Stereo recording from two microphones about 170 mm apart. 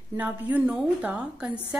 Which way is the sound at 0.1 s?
10° right (ahead or behind).